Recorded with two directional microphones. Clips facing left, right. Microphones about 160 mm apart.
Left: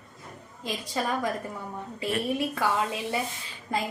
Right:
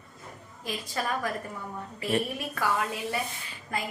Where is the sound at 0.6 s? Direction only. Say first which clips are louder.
Left 2 dB; 20° left (ahead or behind).